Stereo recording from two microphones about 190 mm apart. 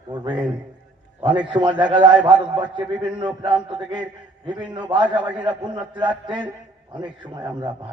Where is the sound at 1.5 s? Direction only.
25° right (ahead or behind).